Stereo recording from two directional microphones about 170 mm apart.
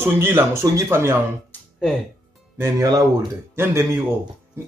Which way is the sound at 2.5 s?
15° right (ahead or behind).